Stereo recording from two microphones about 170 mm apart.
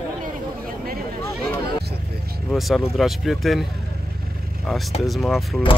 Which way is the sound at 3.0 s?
Centre (ahead or behind).